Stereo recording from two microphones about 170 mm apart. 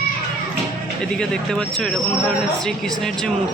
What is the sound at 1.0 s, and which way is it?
Speech, 5° left (ahead or behind).